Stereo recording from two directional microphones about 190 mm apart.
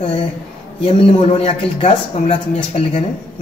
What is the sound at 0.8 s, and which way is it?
A man's voice, 30° left (ahead or behind).